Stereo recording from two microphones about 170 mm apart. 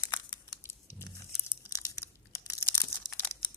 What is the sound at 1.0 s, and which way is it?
Crumpling, 15° left (ahead or behind).